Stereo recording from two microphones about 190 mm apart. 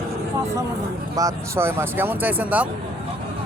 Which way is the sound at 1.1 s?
15° right (ahead or behind).